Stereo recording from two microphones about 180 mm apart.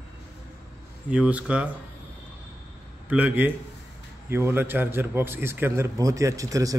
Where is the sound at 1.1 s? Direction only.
5° right (ahead or behind).